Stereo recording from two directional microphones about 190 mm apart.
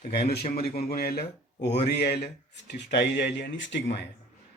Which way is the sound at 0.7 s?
55° left (ahead or behind).